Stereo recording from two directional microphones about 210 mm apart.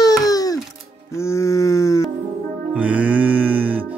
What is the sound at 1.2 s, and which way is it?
Livestock, 15° left (ahead or behind).